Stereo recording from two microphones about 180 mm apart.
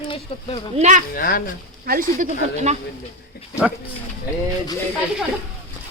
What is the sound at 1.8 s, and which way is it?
Speech, 50° right (ahead or behind).